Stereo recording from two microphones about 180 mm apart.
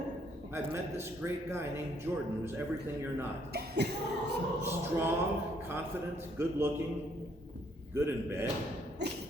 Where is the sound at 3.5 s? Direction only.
60° right (ahead or behind).